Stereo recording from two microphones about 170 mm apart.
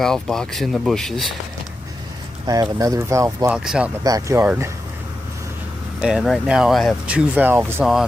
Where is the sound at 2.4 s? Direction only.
20° right (ahead or behind).